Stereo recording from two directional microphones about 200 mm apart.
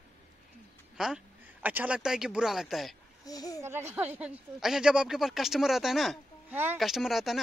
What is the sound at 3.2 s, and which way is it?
Speech, 20° left (ahead or behind).